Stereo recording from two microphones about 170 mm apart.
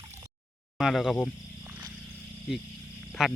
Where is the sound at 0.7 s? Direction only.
Centre (ahead or behind).